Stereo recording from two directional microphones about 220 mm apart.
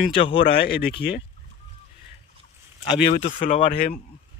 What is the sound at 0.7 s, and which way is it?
Speech, 45° left (ahead or behind).